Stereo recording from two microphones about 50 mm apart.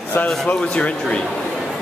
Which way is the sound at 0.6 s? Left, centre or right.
Centre.